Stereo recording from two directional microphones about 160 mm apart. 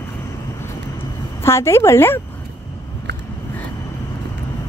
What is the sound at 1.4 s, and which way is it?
Speech, 15° left (ahead or behind).